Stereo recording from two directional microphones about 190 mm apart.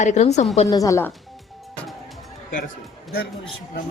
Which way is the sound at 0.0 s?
35° left (ahead or behind).